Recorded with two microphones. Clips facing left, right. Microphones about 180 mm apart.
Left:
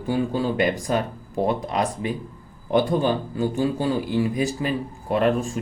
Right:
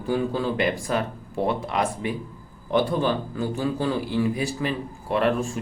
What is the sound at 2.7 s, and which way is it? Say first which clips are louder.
Speech: left 2 dB; 45° left (ahead or behind).